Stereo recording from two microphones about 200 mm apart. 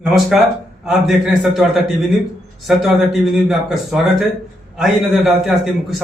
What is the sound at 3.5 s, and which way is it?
A man's voice, centre (ahead or behind).